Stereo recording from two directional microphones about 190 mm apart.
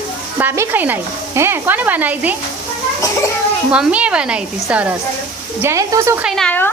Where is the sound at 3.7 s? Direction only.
5° right (ahead or behind).